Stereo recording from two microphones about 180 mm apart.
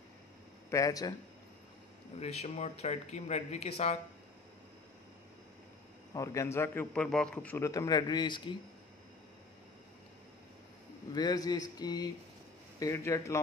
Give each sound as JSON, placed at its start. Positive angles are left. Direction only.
{"t": 0.7, "sound": "speech", "side_deg": 20}
{"t": 2.1, "sound": "speech", "side_deg": 35}
{"t": 6.1, "sound": "a man's voice", "side_deg": 15}
{"t": 11.1, "sound": "a man's voice", "side_deg": 20}